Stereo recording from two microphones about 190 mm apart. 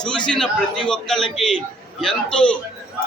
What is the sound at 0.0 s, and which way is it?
A man's voice, 5° left (ahead or behind).